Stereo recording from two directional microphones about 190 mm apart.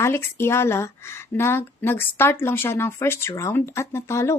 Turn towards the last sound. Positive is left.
turn(degrees=15)  # may be behind; listen again after turning